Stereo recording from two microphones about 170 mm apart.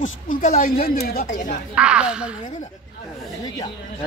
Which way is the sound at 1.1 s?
65° left (ahead or behind).